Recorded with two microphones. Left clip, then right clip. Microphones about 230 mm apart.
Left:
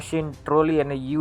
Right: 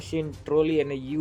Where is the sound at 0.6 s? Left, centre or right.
Left.